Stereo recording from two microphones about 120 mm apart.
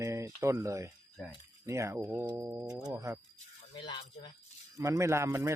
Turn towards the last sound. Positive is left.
turn(degrees=-20)  # may be behind; listen again after turning